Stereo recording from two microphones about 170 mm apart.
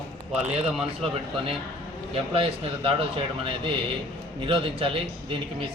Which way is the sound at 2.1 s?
35° right (ahead or behind).